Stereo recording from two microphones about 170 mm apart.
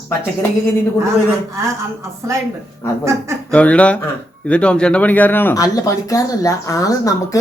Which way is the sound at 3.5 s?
5° left (ahead or behind).